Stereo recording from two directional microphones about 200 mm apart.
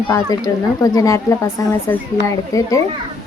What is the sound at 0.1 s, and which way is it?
A woman's voice, 15° left (ahead or behind).